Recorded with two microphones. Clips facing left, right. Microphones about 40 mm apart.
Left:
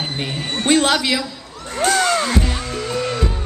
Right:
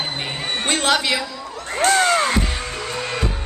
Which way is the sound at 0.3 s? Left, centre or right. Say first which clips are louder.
Even; right.